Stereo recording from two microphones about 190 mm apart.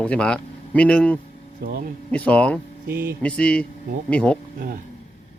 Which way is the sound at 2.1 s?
5° left (ahead or behind).